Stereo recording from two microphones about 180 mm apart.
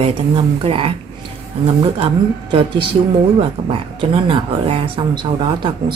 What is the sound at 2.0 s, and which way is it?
Speech, 30° right (ahead or behind).